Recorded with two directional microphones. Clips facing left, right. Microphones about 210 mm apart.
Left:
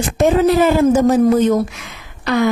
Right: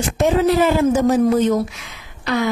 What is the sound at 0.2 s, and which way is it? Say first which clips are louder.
A woman's voice: left 3 dB; 45° left (ahead or behind).